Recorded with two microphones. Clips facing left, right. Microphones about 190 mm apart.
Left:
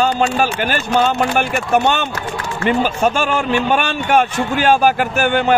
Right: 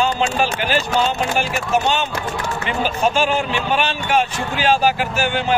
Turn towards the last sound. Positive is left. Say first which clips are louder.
# left 5 dB
turn(degrees=55)  # may be behind; listen again after turning